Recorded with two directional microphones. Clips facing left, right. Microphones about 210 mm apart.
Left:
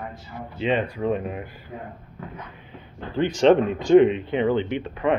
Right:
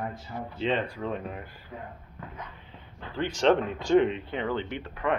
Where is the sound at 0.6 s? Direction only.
15° left (ahead or behind).